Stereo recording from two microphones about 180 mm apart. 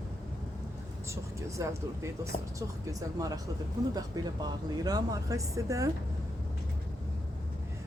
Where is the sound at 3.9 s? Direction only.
20° right (ahead or behind).